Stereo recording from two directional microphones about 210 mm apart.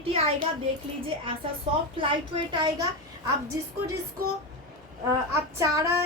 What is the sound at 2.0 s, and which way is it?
Speech, 20° right (ahead or behind).